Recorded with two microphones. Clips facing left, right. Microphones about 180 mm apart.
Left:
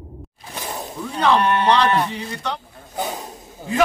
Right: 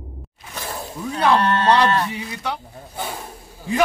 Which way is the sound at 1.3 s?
15° left (ahead or behind).